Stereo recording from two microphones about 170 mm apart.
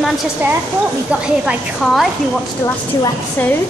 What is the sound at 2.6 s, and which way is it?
Speech, 15° left (ahead or behind).